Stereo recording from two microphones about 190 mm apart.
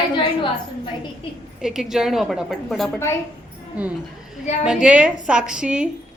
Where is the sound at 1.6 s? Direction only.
Centre (ahead or behind).